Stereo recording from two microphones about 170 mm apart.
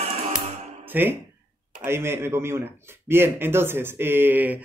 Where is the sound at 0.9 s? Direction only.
10° right (ahead or behind).